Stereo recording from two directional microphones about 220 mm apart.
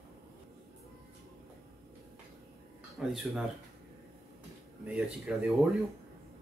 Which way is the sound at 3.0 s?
Centre (ahead or behind).